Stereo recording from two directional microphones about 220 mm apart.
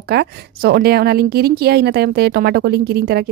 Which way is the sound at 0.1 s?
45° right (ahead or behind).